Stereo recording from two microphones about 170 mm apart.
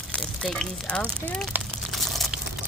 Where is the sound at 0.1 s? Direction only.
5° left (ahead or behind).